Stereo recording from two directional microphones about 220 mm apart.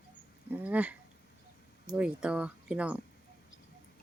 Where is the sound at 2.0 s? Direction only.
5° right (ahead or behind).